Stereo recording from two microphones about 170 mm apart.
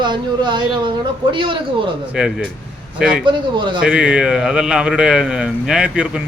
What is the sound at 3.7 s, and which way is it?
A man's voice, 5° right (ahead or behind).